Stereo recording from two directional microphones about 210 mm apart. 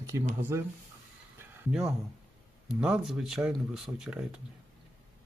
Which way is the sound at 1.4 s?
5° right (ahead or behind).